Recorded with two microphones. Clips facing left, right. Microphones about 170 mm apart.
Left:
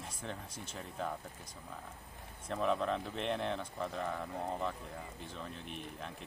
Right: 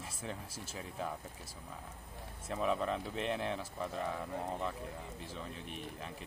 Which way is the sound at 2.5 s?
5° right (ahead or behind).